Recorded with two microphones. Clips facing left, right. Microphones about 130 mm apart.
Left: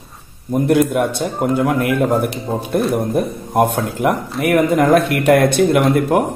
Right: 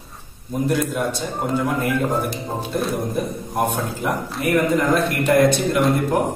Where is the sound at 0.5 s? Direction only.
65° left (ahead or behind).